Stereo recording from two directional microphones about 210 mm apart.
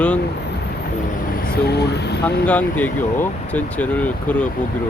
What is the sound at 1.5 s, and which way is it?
Speech, 50° left (ahead or behind).